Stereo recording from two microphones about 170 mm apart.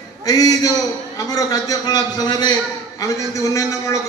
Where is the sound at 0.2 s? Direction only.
20° left (ahead or behind).